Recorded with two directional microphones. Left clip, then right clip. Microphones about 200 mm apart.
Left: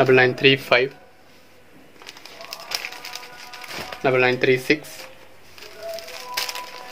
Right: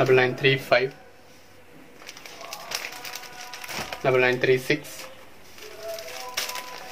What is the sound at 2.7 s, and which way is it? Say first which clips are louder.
Music: left 4 dB; 50° left (ahead or behind).